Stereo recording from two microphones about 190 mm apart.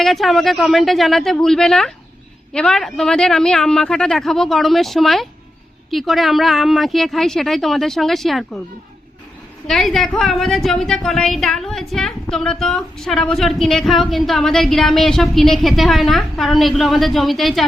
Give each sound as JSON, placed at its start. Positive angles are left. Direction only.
{"t": 0.0, "sound": "a woman's voice", "side_deg": 0}
{"t": 9.6, "sound": "a woman's voice", "side_deg": 0}